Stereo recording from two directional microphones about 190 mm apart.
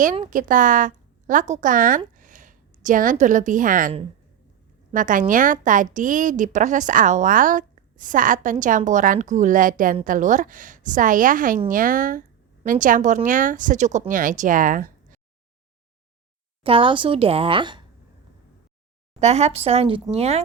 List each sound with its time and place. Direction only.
0.0 s a woman's voice: 40° right (ahead or behind)
16.6 s a woman's voice: 25° right (ahead or behind)
19.2 s a woman's voice: 35° right (ahead or behind)